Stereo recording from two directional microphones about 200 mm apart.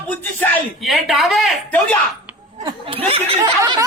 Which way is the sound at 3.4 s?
15° right (ahead or behind).